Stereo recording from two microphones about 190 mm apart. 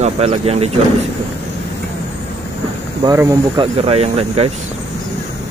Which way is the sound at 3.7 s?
35° right (ahead or behind).